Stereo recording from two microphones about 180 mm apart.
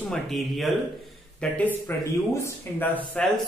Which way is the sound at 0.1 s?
Centre (ahead or behind).